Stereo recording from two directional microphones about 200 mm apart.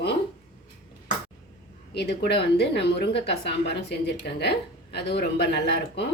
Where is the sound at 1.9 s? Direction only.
55° left (ahead or behind).